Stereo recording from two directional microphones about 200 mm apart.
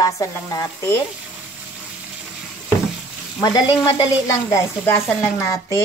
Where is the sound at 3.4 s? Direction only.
20° left (ahead or behind).